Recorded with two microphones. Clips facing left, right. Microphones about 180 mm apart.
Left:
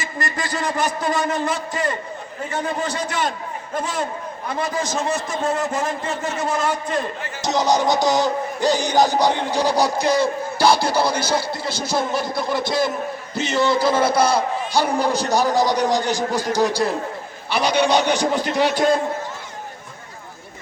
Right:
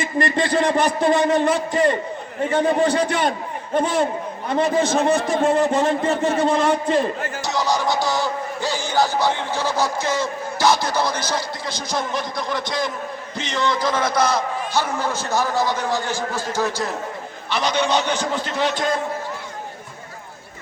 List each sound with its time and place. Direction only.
0.0 s a man's voice: 30° right (ahead or behind)
4.4 s a man's voice: 30° right (ahead or behind)
7.4 s speech: 20° left (ahead or behind)